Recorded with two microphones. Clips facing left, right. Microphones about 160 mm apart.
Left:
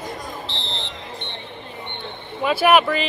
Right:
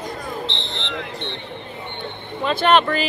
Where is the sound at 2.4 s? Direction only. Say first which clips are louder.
Left 1 dB; 10° left (ahead or behind).